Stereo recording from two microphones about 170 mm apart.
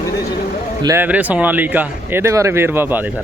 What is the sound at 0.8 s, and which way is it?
Speech, 20° right (ahead or behind).